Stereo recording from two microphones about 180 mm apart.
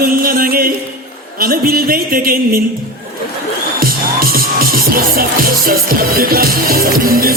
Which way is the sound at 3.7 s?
55° right (ahead or behind).